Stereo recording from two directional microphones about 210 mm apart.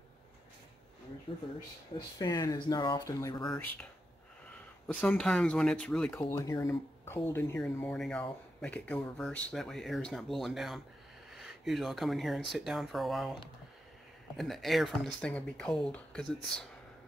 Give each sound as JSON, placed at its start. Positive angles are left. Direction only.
{"t": 2.0, "sound": "speech", "side_deg": 20}
{"t": 4.8, "sound": "speech", "side_deg": 5}